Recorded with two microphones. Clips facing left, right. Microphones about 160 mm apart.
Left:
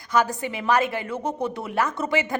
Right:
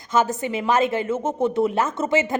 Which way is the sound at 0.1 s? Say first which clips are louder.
Right 2 dB; 20° right (ahead or behind).